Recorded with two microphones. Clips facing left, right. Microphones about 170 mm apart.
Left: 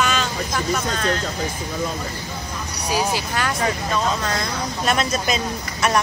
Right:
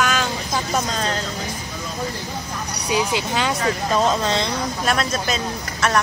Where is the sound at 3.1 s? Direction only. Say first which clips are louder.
Right 2 dB; 20° right (ahead or behind).